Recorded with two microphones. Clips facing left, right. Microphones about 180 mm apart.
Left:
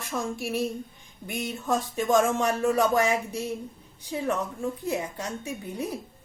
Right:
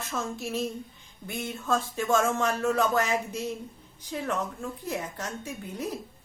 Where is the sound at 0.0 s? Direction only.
15° left (ahead or behind).